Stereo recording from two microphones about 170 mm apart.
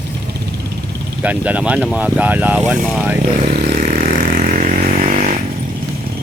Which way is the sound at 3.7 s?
55° right (ahead or behind).